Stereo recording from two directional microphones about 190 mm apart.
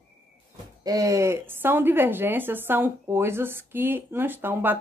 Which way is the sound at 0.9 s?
15° right (ahead or behind).